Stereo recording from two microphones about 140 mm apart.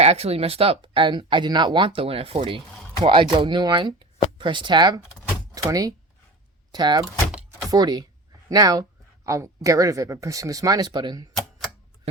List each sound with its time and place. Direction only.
0.0 s speech: 45° right (ahead or behind); by 7.0 s 30° right (ahead or behind)
7.0 s power windows: 10° right (ahead or behind)
7.7 s speech: 30° right (ahead or behind)
8.4 s a sound: 25° right (ahead or behind)
9.6 s speech: 25° right (ahead or behind)